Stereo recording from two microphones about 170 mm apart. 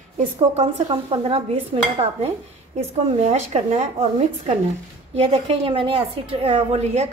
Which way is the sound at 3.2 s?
40° right (ahead or behind).